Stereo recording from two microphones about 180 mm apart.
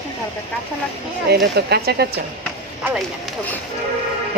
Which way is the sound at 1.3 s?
65° right (ahead or behind).